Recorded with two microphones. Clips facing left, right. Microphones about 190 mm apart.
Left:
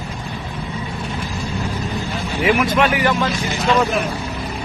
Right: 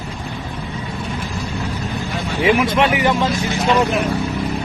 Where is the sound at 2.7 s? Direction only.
25° right (ahead or behind).